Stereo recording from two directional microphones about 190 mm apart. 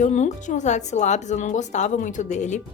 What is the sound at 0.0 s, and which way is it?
A woman's voice, 40° left (ahead or behind).